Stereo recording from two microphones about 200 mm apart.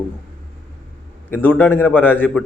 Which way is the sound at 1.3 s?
10° left (ahead or behind).